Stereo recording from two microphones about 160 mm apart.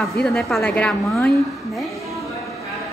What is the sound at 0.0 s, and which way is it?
A woman's voice, centre (ahead or behind).